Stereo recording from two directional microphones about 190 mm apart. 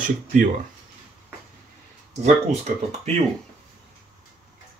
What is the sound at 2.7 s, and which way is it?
Speech, 45° right (ahead or behind).